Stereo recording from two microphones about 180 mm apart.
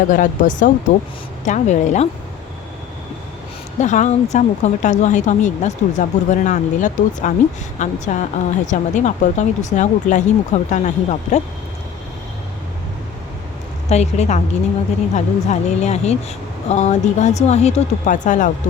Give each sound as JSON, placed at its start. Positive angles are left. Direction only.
{"t": 0.1, "sound": "speech", "side_deg": 45}
{"t": 3.8, "sound": "speech", "side_deg": 40}
{"t": 13.9, "sound": "speech", "side_deg": 40}